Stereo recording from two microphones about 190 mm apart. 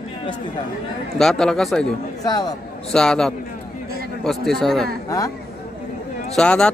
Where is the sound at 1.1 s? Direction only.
Centre (ahead or behind).